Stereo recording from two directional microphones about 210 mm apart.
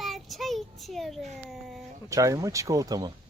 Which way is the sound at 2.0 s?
15° right (ahead or behind).